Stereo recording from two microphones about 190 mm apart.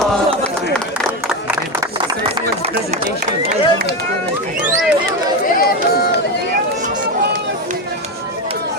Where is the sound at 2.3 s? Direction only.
35° right (ahead or behind).